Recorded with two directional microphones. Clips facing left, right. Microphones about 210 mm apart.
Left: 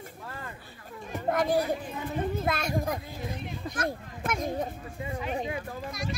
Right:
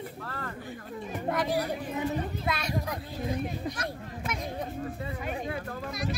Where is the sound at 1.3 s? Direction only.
50° left (ahead or behind).